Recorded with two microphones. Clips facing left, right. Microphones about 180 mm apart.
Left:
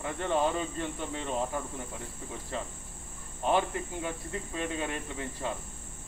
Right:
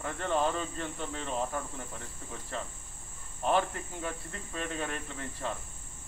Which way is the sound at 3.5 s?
15° left (ahead or behind).